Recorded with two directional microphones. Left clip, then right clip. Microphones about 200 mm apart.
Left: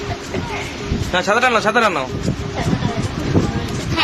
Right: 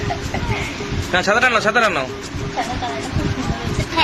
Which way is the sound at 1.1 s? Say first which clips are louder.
Even; 5° left (ahead or behind).